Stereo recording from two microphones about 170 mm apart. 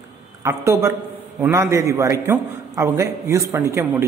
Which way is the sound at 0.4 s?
15° right (ahead or behind).